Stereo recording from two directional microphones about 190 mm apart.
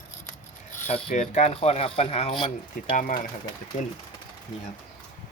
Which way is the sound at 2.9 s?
40° left (ahead or behind).